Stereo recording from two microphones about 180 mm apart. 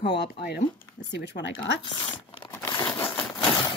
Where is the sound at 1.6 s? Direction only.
25° left (ahead or behind).